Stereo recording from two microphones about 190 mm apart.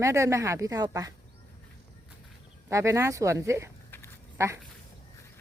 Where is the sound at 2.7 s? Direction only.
15° right (ahead or behind).